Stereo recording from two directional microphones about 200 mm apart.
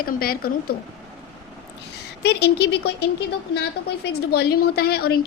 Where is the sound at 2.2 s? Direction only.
55° left (ahead or behind).